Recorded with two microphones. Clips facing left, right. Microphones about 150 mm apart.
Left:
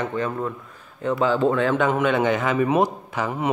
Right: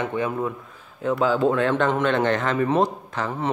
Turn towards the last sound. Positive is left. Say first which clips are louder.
# left 2 dB
turn(degrees=10)  # may be behind; listen again after turning